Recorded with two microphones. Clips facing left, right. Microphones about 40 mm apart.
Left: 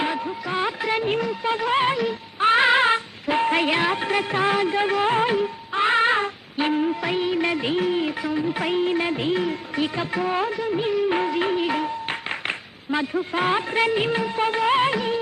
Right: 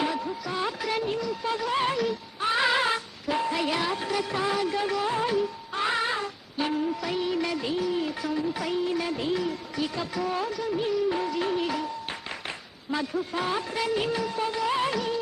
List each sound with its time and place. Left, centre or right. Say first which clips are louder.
0.0 s a sound: left 3 dB; left
1.3 s music: left 5 dB; left
2.4 s music: left 7 dB; left
8.2 s music: left 4 dB; left